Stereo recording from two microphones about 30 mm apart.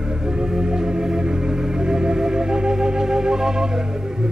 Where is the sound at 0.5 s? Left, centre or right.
Right.